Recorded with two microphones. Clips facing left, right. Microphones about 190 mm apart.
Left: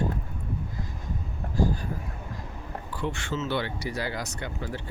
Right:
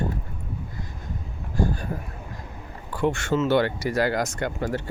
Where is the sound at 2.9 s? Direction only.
50° right (ahead or behind).